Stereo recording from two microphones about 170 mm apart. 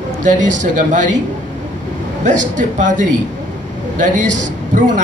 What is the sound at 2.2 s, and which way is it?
Speech, 45° right (ahead or behind).